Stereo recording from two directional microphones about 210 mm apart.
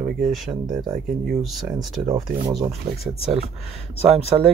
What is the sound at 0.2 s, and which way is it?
Speech, centre (ahead or behind).